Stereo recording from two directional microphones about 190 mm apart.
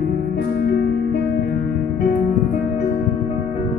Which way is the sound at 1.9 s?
40° left (ahead or behind).